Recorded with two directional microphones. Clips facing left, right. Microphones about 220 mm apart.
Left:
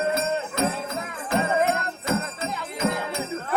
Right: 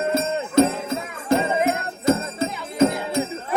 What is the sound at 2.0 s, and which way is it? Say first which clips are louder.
Music: right 6 dB; 40° right (ahead or behind).